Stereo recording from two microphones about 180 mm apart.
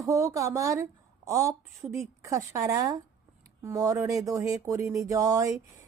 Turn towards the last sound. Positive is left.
turn(degrees=-20)  # may be behind; listen again after turning